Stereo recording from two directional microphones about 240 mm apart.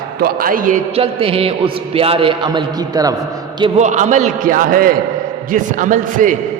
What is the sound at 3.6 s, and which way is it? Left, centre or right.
A man's voice, right.